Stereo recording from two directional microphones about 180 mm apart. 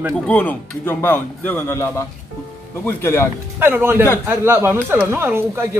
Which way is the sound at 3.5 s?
10° right (ahead or behind).